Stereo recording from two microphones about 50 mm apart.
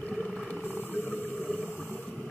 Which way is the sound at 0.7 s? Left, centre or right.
Left.